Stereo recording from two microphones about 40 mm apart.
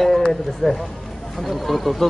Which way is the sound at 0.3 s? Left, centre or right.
Centre.